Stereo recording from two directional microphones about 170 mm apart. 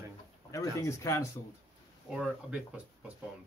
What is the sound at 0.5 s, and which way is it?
Speech, 20° left (ahead or behind).